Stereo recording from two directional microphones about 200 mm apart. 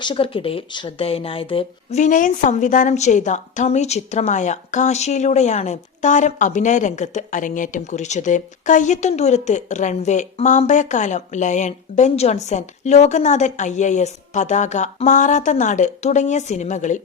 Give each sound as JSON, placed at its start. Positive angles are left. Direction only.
{"t": 0.0, "sound": "speech", "side_deg": 25}